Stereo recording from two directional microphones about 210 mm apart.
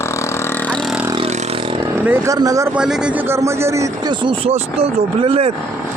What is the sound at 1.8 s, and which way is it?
Speech, 10° right (ahead or behind).